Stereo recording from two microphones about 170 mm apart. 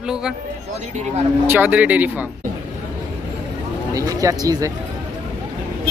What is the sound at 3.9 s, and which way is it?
Speech, 20° right (ahead or behind).